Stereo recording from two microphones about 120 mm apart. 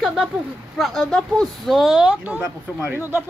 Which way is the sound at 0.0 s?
Centre (ahead or behind).